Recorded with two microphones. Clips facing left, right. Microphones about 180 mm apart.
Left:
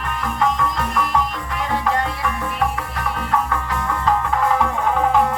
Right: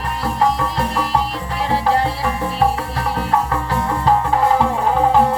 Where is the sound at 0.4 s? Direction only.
35° right (ahead or behind).